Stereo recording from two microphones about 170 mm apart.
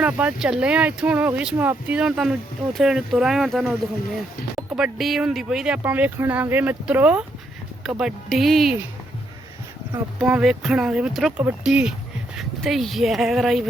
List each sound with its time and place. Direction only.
0.0 s speech: 5° right (ahead or behind)
9.9 s speech: 10° right (ahead or behind)